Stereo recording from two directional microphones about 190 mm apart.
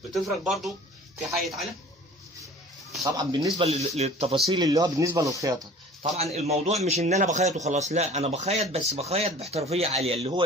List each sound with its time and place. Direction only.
0.1 s speech: centre (ahead or behind)
3.0 s speech: 20° right (ahead or behind)
3.5 s a man's voice: 35° right (ahead or behind)
4.5 s speech: 20° right (ahead or behind)
6.3 s a man's voice: 35° right (ahead or behind)